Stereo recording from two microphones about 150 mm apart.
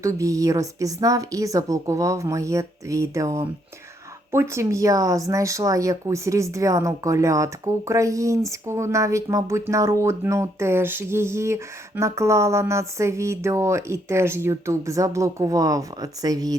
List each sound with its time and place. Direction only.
0.0 s speech: 20° right (ahead or behind)